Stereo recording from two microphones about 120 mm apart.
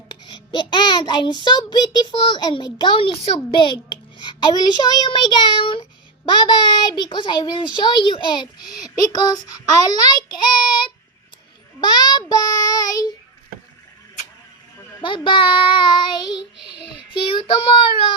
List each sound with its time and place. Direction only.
0.3 s a child's voice: 40° left (ahead or behind)
15.0 s child singing: 40° left (ahead or behind)